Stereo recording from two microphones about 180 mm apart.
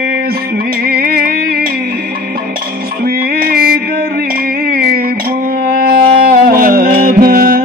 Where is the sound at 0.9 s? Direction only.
55° right (ahead or behind).